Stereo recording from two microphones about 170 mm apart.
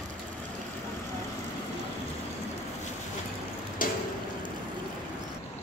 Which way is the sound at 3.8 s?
55° left (ahead or behind).